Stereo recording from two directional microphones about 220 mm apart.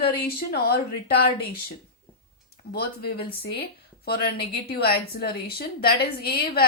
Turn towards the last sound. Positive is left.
turn(degrees=45)  # may be behind; listen again after turning